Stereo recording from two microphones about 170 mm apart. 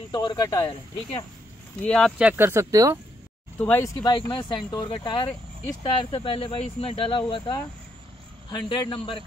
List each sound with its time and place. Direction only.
0.1 s speech: 25° left (ahead or behind)
1.8 s speech: 5° left (ahead or behind); by 3.0 s 20° right (ahead or behind)
3.5 s speech: 10° left (ahead or behind)
4.0 s speech: 25° left (ahead or behind)